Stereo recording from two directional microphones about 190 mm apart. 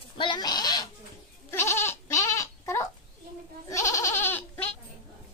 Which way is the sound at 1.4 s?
15° left (ahead or behind).